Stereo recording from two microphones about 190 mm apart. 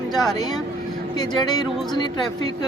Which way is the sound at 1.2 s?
20° left (ahead or behind).